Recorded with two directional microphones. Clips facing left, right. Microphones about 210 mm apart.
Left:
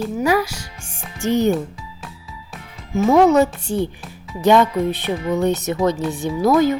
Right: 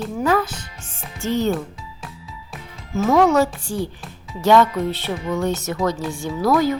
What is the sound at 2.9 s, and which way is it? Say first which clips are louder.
Speech: left 3 dB; 15° left (ahead or behind).